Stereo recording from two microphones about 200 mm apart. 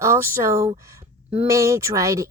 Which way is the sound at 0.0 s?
15° right (ahead or behind).